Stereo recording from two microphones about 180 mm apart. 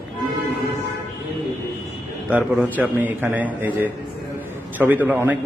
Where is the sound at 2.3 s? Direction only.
10° right (ahead or behind).